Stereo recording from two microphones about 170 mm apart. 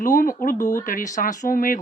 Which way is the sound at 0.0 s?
55° left (ahead or behind).